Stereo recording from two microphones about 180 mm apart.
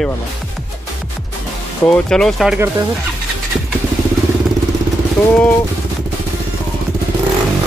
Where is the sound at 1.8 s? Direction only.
5° left (ahead or behind).